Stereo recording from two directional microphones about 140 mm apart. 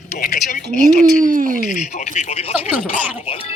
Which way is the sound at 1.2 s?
75° right (ahead or behind).